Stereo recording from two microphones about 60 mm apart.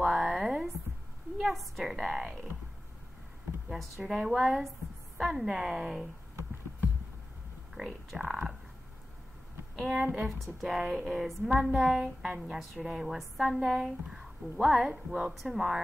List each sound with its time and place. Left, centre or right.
0.0 s a sound: centre
1.4 s a woman's voice: centre
3.6 s a woman's voice: centre
7.7 s a woman's voice: centre
9.8 s a woman's voice: centre
10.6 s a woman's voice: centre
14.9 s a woman's voice: centre